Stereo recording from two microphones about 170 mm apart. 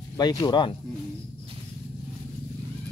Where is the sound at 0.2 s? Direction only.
25° left (ahead or behind).